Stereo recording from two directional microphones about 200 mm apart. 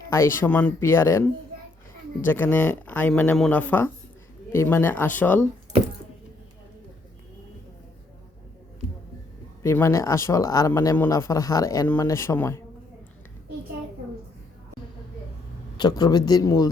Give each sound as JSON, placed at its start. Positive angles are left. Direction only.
{"t": 0.1, "sound": "speech", "side_deg": 10}
{"t": 9.6, "sound": "speech", "side_deg": 15}
{"t": 15.8, "sound": "a man's voice", "side_deg": 20}